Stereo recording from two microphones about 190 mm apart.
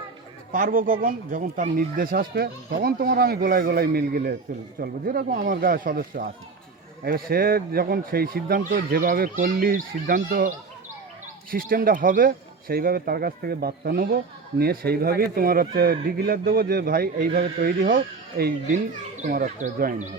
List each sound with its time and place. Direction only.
0.5 s speech: 45° right (ahead or behind)
11.5 s speech: 50° right (ahead or behind)